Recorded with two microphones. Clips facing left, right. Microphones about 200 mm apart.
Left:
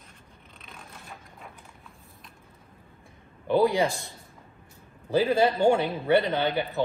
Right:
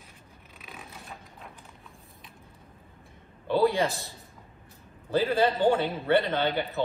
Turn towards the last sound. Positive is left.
turn(degrees=15)  # may be behind; listen again after turning